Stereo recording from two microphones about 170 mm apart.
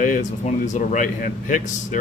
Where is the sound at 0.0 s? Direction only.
50° left (ahead or behind).